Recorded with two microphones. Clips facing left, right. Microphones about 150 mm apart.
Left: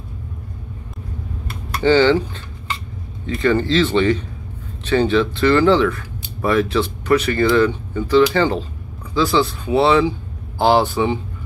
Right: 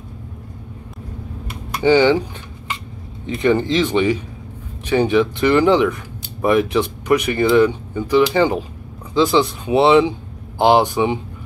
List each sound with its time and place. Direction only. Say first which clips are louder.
1.5 s typing: right 1 dB; 15° right (ahead or behind)
3.3 s speech: right 1 dB; 20° right (ahead or behind)